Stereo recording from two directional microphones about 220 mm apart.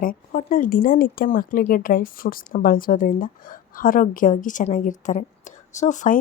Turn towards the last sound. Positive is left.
turn(degrees=35)  # may be behind; listen again after turning